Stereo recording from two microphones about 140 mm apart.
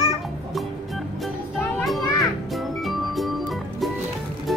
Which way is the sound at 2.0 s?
25° left (ahead or behind).